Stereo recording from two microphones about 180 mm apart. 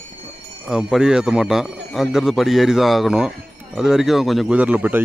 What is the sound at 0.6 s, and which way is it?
A man's voice, 5° right (ahead or behind).